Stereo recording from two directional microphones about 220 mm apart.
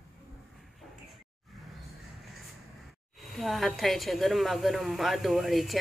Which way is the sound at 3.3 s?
Centre (ahead or behind).